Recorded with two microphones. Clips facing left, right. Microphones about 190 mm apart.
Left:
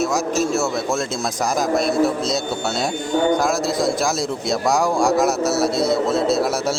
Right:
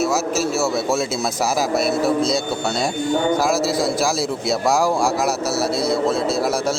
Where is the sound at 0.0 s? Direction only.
5° right (ahead or behind).